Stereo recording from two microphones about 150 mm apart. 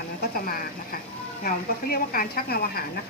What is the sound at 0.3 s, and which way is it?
A woman's voice, 70° left (ahead or behind).